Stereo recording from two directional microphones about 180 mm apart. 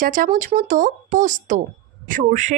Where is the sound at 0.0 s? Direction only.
50° right (ahead or behind).